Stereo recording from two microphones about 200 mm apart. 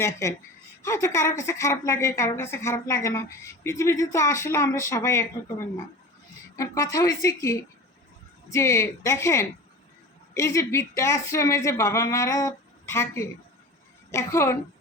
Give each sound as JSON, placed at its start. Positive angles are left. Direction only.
{"t": 0.0, "sound": "a woman's voice", "side_deg": 15}